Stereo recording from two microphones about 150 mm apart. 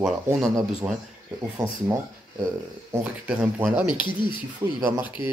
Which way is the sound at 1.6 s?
20° right (ahead or behind).